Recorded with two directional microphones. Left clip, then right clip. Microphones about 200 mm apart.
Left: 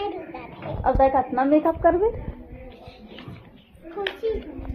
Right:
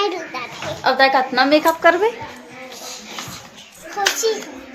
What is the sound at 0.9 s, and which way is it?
A woman's voice, 25° right (ahead or behind).